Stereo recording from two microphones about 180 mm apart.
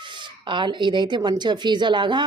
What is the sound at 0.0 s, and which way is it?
Speech, 25° right (ahead or behind).